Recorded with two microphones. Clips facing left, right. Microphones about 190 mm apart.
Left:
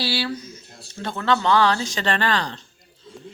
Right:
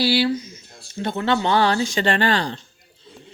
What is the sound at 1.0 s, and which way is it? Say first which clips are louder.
A man's voice: right 1 dB; 25° right (ahead or behind).